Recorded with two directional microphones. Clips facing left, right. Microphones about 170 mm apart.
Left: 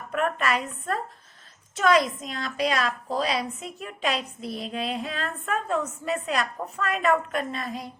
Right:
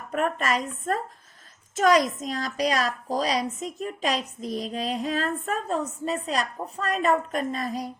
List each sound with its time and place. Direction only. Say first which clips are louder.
0.1 s a woman's voice: even; 40° right (ahead or behind)